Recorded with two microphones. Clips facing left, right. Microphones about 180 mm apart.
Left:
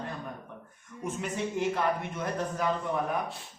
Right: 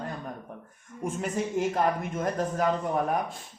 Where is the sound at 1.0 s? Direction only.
45° right (ahead or behind).